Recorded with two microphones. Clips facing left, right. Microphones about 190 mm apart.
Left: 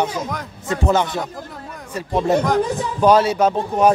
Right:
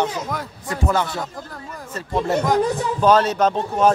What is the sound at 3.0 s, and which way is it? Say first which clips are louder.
Speech: left 2 dB; 10° left (ahead or behind).